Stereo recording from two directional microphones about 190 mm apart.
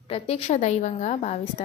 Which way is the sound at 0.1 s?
35° left (ahead or behind).